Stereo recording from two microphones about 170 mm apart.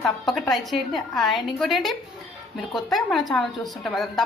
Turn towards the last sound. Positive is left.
turn(degrees=0)  # may be behind; listen again after turning